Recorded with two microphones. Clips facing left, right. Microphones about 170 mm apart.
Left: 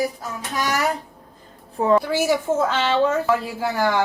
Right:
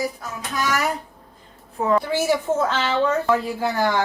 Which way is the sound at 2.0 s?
10° left (ahead or behind).